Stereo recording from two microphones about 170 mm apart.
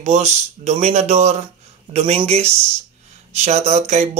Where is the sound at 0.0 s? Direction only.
40° right (ahead or behind).